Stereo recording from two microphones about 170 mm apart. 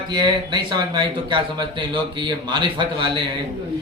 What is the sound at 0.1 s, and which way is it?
Speech, 25° right (ahead or behind).